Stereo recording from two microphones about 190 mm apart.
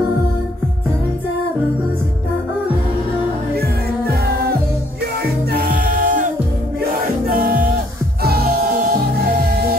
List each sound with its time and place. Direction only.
4.1 s music: 55° right (ahead or behind)